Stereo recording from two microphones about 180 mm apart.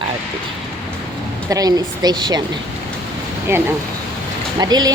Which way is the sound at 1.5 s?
20° right (ahead or behind).